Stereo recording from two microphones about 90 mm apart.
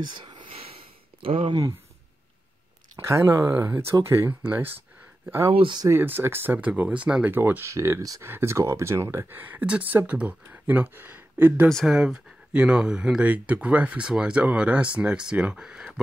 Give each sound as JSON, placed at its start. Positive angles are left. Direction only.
{"t": 0.1, "sound": "a sound", "side_deg": -60}
{"t": 3.0, "sound": "speech", "side_deg": -30}
{"t": 5.5, "sound": "speech", "side_deg": -80}
{"t": 5.9, "sound": "speech", "side_deg": -25}
{"t": 7.2, "sound": "speech", "side_deg": -20}
{"t": 11.7, "sound": "speech", "side_deg": -5}